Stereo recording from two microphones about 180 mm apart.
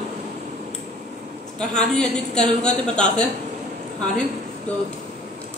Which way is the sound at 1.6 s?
5° left (ahead or behind).